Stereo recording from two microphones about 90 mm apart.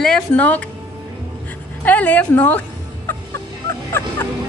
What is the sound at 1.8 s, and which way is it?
Speech, 20° left (ahead or behind).